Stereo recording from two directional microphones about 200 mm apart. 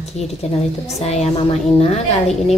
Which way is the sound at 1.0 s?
35° left (ahead or behind).